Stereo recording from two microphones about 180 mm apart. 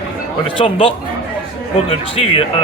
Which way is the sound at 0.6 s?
30° left (ahead or behind).